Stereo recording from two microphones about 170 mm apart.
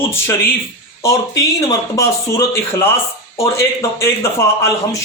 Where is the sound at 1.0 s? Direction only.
20° left (ahead or behind).